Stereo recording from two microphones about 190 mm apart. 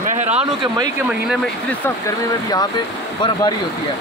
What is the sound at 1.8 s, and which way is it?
Speech, 15° left (ahead or behind).